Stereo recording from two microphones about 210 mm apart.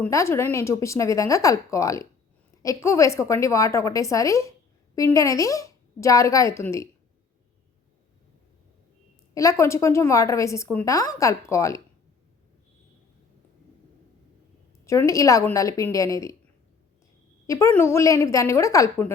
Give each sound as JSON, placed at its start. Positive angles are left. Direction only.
{"t": 0.0, "sound": "speech", "side_deg": 15}
{"t": 9.3, "sound": "speech", "side_deg": 15}
{"t": 14.8, "sound": "speech", "side_deg": 15}
{"t": 17.4, "sound": "speech", "side_deg": 15}